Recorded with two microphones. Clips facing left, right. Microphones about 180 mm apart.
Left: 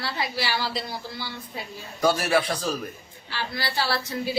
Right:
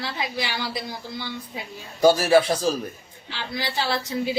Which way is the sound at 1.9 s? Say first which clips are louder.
Right 6 dB; 25° right (ahead or behind).